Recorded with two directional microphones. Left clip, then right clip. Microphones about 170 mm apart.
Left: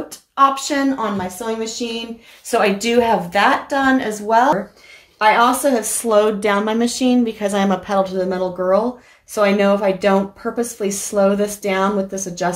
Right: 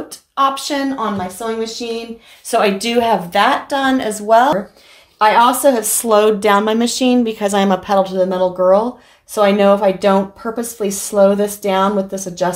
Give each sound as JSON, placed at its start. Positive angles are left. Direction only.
{"t": 0.4, "sound": "speech", "side_deg": -20}